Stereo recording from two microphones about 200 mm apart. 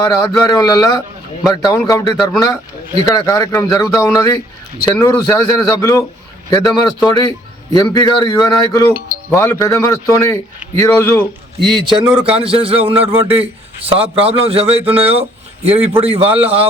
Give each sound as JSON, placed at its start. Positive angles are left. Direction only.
{"t": 0.0, "sound": "a man's voice", "side_deg": 20}
{"t": 8.9, "sound": "speech", "side_deg": -45}
{"t": 9.3, "sound": "speech", "side_deg": 10}
{"t": 11.6, "sound": "a man's voice", "side_deg": -25}